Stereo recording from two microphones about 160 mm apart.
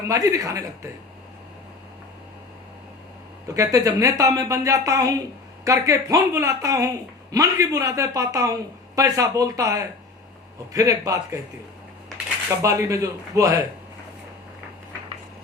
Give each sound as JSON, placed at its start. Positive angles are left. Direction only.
{"t": 0.1, "sound": "speech", "side_deg": -20}
{"t": 3.5, "sound": "speech", "side_deg": -20}
{"t": 12.6, "sound": "speech", "side_deg": -20}